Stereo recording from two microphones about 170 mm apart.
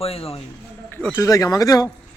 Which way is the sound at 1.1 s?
20° left (ahead or behind).